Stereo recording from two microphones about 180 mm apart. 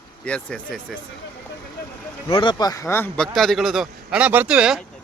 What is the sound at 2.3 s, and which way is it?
A man's voice, 25° left (ahead or behind).